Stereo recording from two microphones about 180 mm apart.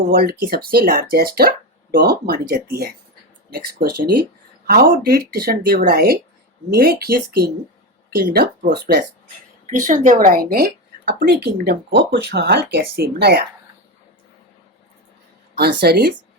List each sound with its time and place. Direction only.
0.0 s a woman's voice: 55° right (ahead or behind)
15.5 s speech: 60° right (ahead or behind)